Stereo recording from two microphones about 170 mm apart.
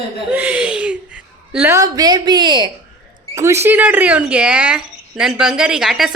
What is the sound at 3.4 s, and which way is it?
Speech, 15° right (ahead or behind).